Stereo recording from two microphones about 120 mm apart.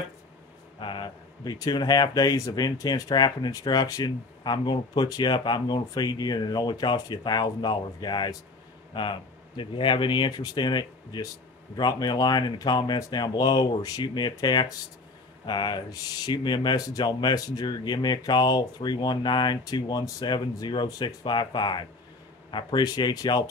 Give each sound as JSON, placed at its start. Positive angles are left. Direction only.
{"t": 0.7, "sound": "speech", "side_deg": 40}